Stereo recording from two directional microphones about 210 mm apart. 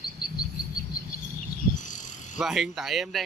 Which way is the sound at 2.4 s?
Centre (ahead or behind).